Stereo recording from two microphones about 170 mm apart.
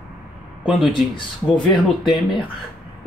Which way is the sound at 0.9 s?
30° left (ahead or behind).